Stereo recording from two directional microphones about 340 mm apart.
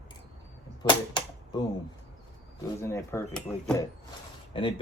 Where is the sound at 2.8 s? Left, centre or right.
Centre.